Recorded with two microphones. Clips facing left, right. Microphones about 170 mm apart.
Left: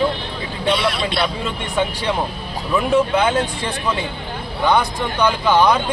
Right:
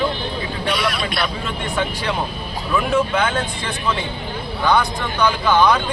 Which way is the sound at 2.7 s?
15° left (ahead or behind).